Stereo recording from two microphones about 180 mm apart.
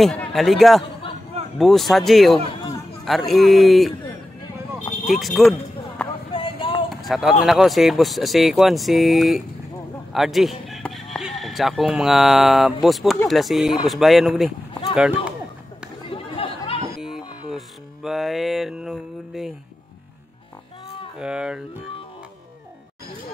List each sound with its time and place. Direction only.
0.0 s speech: 5° left (ahead or behind)
5.0 s speech: centre (ahead or behind)
6.3 s a sound: 30° left (ahead or behind)
6.9 s speech: centre (ahead or behind)
14.7 s a sound: 25° left (ahead or behind)
15.0 s speech: 5° right (ahead or behind)
16.1 s chatter: 30° left (ahead or behind)
17.5 s music: centre (ahead or behind)
21.2 s speech: 5° right (ahead or behind)